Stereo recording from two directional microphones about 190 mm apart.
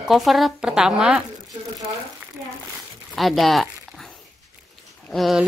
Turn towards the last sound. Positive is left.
turn(degrees=0)  # may be behind; listen again after turning